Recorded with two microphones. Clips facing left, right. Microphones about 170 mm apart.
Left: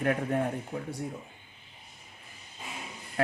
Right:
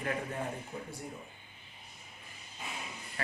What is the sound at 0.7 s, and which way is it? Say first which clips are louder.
Speech: left 6 dB; 70° left (ahead or behind).